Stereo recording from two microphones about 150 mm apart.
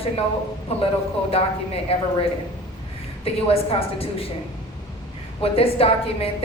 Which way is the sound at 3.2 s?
40° left (ahead or behind).